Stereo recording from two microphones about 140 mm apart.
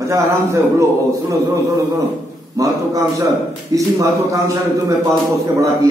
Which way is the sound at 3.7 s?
25° right (ahead or behind).